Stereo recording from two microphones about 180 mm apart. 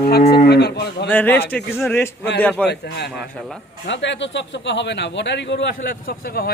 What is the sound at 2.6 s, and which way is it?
Speech, 65° left (ahead or behind).